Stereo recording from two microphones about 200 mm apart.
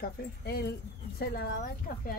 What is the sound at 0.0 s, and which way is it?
Speech, 55° left (ahead or behind).